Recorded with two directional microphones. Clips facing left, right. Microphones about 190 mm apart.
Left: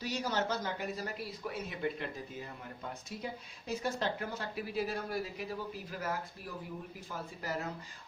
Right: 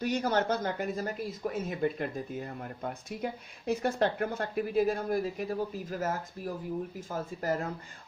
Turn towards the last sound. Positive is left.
turn(degrees=-50)  # may be behind; listen again after turning